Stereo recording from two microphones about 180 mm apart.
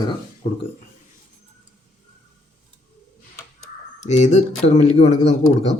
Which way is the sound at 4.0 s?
40° left (ahead or behind).